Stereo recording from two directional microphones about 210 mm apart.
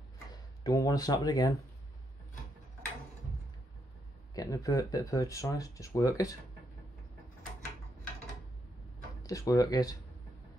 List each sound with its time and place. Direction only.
0.3 s speech: 15° left (ahead or behind)
4.4 s speech: 15° left (ahead or behind)
9.2 s speech: 15° left (ahead or behind)